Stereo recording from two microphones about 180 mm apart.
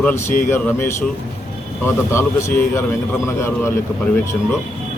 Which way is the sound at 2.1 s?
15° left (ahead or behind).